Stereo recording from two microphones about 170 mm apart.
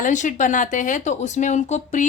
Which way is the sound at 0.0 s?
45° left (ahead or behind).